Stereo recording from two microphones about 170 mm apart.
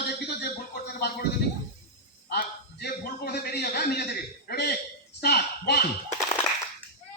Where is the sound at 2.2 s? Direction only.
70° left (ahead or behind).